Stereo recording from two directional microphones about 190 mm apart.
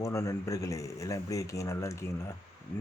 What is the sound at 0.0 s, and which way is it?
Speech, 15° left (ahead or behind).